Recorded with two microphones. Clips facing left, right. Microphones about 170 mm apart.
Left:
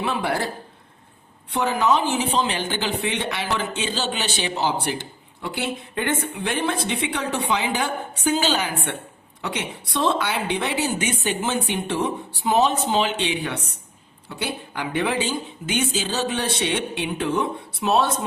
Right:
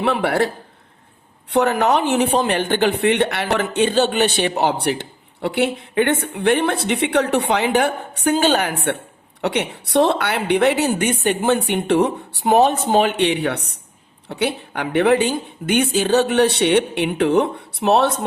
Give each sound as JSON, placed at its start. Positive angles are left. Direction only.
{"t": 0.0, "sound": "a man's voice", "side_deg": -65}